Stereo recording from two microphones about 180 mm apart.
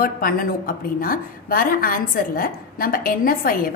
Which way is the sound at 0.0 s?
55° left (ahead or behind).